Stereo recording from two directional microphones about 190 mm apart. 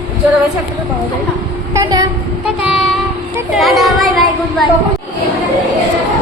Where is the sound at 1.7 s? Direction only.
20° right (ahead or behind).